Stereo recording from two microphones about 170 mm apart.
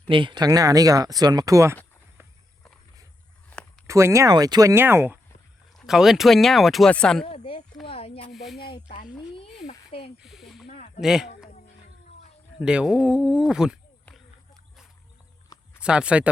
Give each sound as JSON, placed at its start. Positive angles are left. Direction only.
{"t": 0.1, "sound": "speech", "side_deg": -30}
{"t": 3.5, "sound": "a sound", "side_deg": 5}
{"t": 3.8, "sound": "speech", "side_deg": -15}
{"t": 5.7, "sound": "speech", "side_deg": 0}
{"t": 7.3, "sound": "a sound", "side_deg": 35}
{"t": 8.3, "sound": "speech", "side_deg": 0}
{"t": 8.9, "sound": "speech", "side_deg": 35}
{"t": 10.2, "sound": "snake", "side_deg": 0}
{"t": 10.7, "sound": "a sound", "side_deg": 45}
{"t": 11.0, "sound": "speech", "side_deg": -5}
{"t": 12.5, "sound": "speech", "side_deg": -5}
{"t": 15.8, "sound": "speech", "side_deg": -5}